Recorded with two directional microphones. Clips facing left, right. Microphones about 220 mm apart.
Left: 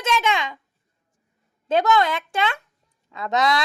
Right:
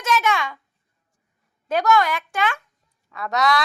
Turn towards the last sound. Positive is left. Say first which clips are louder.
# even
turn(degrees=25)  # may be behind; listen again after turning